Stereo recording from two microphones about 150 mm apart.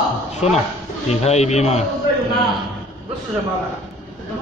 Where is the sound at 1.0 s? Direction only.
45° left (ahead or behind).